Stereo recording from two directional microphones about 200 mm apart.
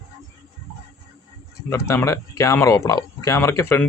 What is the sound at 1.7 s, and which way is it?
Speech, 10° left (ahead or behind).